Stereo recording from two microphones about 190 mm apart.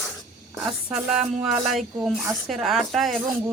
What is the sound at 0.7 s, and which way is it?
Speech, 5° right (ahead or behind).